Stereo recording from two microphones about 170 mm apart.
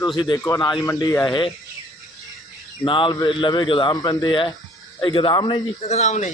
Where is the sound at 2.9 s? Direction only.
30° left (ahead or behind).